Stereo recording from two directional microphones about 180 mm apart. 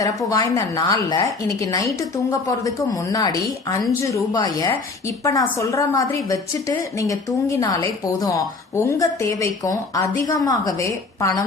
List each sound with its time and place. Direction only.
0.0 s a woman's voice: 20° left (ahead or behind)